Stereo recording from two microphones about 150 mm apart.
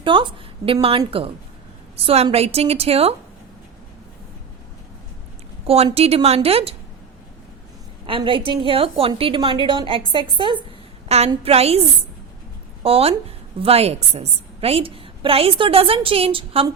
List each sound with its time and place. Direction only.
0.0 s a woman's voice: 35° right (ahead or behind)
5.6 s a woman's voice: 40° right (ahead or behind)
8.0 s a woman's voice: 35° right (ahead or behind)
11.3 s a woman's voice: 40° right (ahead or behind)
12.8 s a woman's voice: 40° right (ahead or behind)